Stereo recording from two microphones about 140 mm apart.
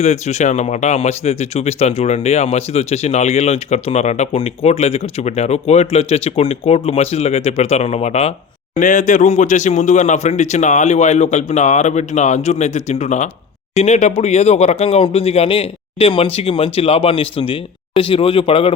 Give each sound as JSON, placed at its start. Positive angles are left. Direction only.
{"t": 0.0, "sound": "speech", "side_deg": 55}
{"t": 8.8, "sound": "speech", "side_deg": 65}